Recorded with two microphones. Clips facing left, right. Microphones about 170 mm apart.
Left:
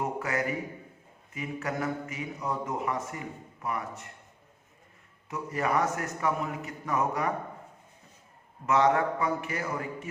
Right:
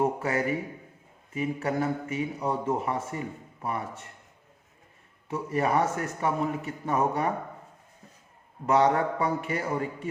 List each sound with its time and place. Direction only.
0.0 s speech: 30° right (ahead or behind)
5.3 s speech: 30° right (ahead or behind)
8.6 s a man's voice: 30° right (ahead or behind)